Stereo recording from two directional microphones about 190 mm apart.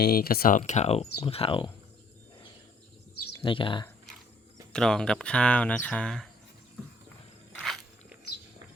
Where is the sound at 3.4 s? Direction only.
25° left (ahead or behind).